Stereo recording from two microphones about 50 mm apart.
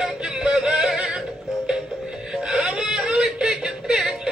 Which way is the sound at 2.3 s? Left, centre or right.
Centre.